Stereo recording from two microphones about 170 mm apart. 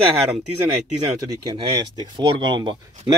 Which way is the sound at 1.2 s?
25° right (ahead or behind).